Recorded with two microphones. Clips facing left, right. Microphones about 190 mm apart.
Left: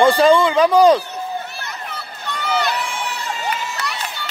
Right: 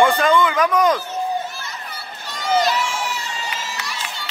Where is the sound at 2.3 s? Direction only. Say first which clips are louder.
Right 2 dB; 60° left (ahead or behind).